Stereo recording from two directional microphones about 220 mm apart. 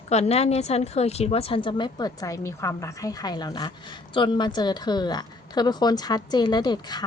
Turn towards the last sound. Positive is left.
turn(degrees=20)  # may be behind; listen again after turning